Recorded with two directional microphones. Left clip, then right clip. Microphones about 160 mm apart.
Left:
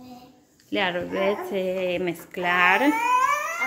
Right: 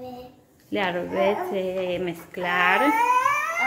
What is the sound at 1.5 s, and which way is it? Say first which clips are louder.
A child's voice: left 1 dB; 30° left (ahead or behind).